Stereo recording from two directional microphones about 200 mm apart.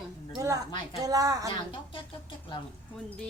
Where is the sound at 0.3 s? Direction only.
15° right (ahead or behind).